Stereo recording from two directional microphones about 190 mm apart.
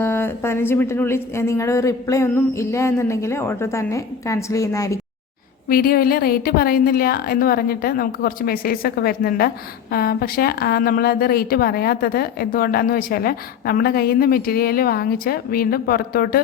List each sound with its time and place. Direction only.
0.0 s speech: 10° left (ahead or behind)
5.6 s a woman's voice: 50° left (ahead or behind)